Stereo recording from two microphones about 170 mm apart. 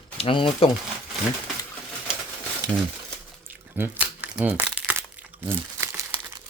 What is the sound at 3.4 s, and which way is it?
Crumpling, 10° right (ahead or behind).